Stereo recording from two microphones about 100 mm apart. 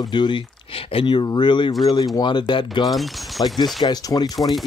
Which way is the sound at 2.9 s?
Centre (ahead or behind).